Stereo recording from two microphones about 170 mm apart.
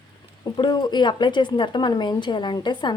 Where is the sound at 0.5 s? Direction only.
25° left (ahead or behind).